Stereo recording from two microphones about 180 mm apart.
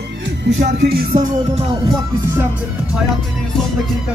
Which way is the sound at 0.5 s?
80° right.